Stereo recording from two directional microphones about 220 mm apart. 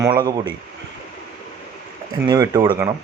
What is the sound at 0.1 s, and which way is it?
Speech, 20° right (ahead or behind).